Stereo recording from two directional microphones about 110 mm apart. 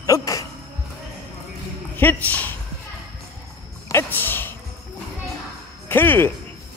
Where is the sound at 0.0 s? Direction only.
30° left (ahead or behind).